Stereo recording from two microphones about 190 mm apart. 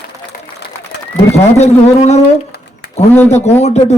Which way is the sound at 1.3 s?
35° left (ahead or behind).